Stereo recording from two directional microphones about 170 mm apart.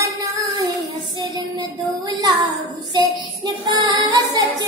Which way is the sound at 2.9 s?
25° right (ahead or behind).